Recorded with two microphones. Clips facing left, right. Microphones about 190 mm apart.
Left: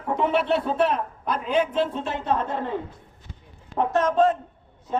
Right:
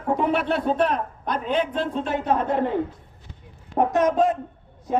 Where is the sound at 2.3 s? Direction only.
15° right (ahead or behind).